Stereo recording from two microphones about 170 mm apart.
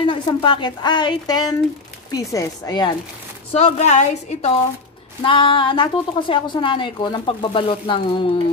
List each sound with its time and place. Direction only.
0.0 s a woman's voice: 30° left (ahead or behind)
3.5 s a woman's voice: 40° left (ahead or behind)
5.2 s a woman's voice: 30° left (ahead or behind)